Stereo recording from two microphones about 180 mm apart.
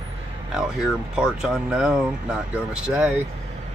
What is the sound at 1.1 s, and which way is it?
Speech, 5° right (ahead or behind).